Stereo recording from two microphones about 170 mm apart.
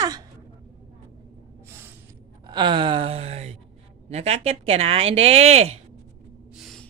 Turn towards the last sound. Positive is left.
turn(degrees=0)  # may be behind; listen again after turning